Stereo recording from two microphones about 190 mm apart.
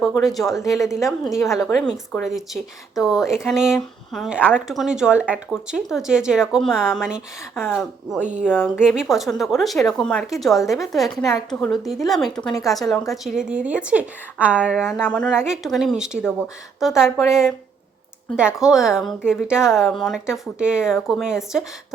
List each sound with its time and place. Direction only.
0.2 s a woman's voice: centre (ahead or behind)
8.2 s a woman's voice: 40° right (ahead or behind)
8.8 s a woman's voice: centre (ahead or behind)